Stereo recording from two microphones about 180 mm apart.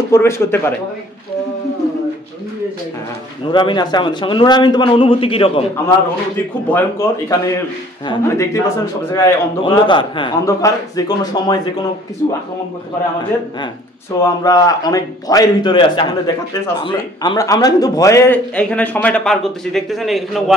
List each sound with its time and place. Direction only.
0.1 s a man's voice: 15° left (ahead or behind)
3.5 s a man's voice: 25° left (ahead or behind)
6.7 s a man's voice: 15° left (ahead or behind)
14.2 s a man's voice: 20° left (ahead or behind); by 20.5 s centre (ahead or behind)